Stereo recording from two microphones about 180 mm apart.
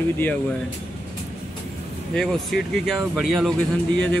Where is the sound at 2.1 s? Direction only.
Centre (ahead or behind).